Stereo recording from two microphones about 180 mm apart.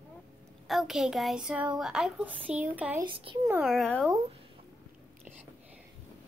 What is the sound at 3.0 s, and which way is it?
Speech, 30° right (ahead or behind).